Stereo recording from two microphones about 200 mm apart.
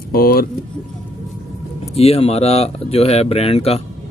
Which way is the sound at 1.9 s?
30° left (ahead or behind).